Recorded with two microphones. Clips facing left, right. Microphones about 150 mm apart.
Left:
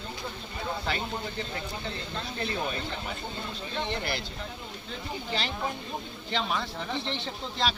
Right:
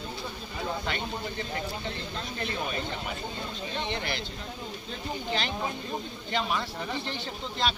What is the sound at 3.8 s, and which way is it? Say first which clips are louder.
Speech: left 2 dB; 5° left (ahead or behind).